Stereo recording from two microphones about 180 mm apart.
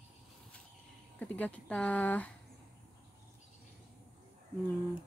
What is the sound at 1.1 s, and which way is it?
Speech, 10° left (ahead or behind).